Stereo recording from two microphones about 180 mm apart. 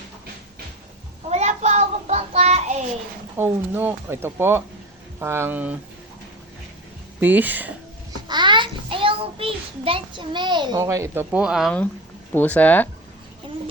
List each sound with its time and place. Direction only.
1.3 s child singing: 40° right (ahead or behind)
3.3 s speech: 10° right (ahead or behind)
7.2 s speech: 10° right (ahead or behind)
8.3 s a child's voice: 25° right (ahead or behind); by 11.8 s centre (ahead or behind)
12.3 s speech: 10° left (ahead or behind)